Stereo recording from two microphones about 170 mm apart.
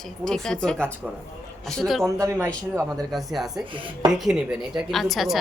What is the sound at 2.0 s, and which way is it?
A woman's voice, 15° right (ahead or behind).